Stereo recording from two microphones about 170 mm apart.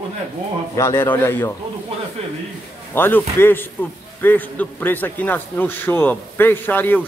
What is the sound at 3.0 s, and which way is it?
A man's voice, 10° left (ahead or behind).